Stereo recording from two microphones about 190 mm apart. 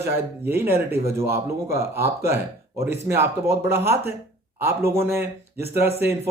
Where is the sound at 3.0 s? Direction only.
15° right (ahead or behind).